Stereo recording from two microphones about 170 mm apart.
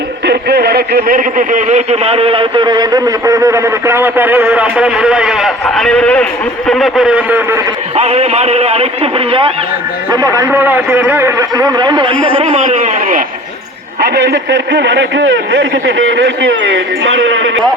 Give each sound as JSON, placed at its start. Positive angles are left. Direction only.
{"t": 0.3, "sound": "a man's voice", "side_deg": -70}
{"t": 7.9, "sound": "a man's voice", "side_deg": -40}
{"t": 10.1, "sound": "speech", "side_deg": -20}
{"t": 12.4, "sound": "a man's voice", "side_deg": -40}
{"t": 14.0, "sound": "speech", "side_deg": -80}